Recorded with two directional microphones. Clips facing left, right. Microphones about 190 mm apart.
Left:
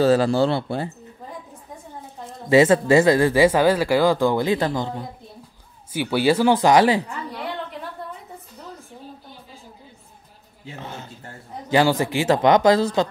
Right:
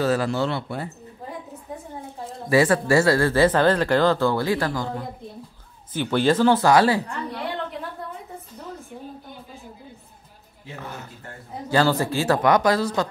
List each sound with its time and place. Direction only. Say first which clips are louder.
0.0 s speech: left 5 dB; 30° left (ahead or behind)
2.5 s speech: left 4 dB; 20° left (ahead or behind)
5.9 s speech: left 1 dB; 10° left (ahead or behind)
7.1 s a sound: right 1 dB; centre (ahead or behind)
10.6 s a sound: left 1 dB; 25° left (ahead or behind)
11.7 s speech: left 2 dB; 15° left (ahead or behind)